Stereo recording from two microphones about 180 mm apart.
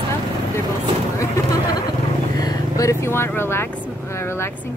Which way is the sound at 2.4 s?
20° left (ahead or behind).